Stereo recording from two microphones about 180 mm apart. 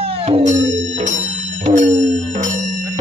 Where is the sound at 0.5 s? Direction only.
90° right.